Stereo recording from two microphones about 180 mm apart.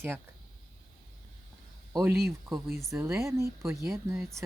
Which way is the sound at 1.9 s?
15° right (ahead or behind).